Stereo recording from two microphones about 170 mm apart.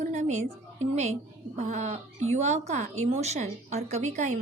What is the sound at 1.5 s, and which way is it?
Speech, 45° right (ahead or behind).